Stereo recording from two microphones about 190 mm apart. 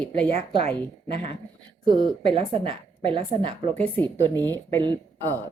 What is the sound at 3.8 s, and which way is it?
Speech, 10° left (ahead or behind).